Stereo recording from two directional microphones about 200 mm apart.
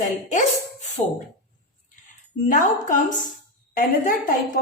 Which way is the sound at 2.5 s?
40° left (ahead or behind).